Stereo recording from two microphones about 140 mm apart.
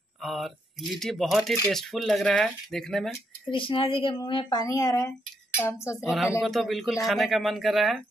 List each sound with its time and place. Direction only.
0.2 s speech: centre (ahead or behind)
3.4 s speech: 40° left (ahead or behind); by 6.0 s 20° left (ahead or behind)
6.0 s speech: centre (ahead or behind)